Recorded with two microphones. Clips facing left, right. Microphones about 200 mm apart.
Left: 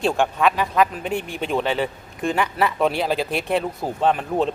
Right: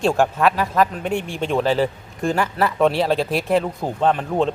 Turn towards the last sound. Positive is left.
turn(degrees=5)  # may be behind; listen again after turning